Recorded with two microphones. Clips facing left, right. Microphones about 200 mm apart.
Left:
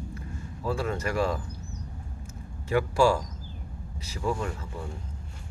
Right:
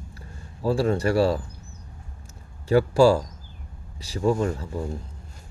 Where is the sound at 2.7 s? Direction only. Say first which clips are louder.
Right 6 dB; 30° right (ahead or behind).